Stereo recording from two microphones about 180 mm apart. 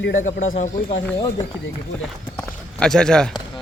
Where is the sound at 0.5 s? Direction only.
40° left (ahead or behind).